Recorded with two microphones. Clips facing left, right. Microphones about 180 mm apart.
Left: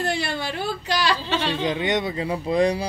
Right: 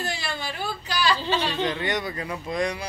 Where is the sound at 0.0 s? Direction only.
60° left (ahead or behind).